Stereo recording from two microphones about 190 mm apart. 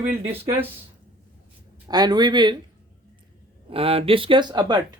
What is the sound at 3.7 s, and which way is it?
Speech, 30° right (ahead or behind).